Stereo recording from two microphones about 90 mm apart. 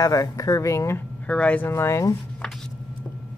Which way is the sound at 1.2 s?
15° left (ahead or behind).